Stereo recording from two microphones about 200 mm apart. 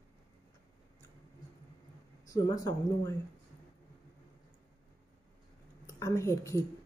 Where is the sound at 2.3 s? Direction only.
15° left (ahead or behind).